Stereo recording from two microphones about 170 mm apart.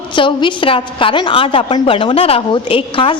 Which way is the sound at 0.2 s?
30° left (ahead or behind).